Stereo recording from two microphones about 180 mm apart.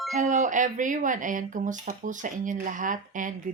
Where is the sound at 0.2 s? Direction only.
45° right (ahead or behind).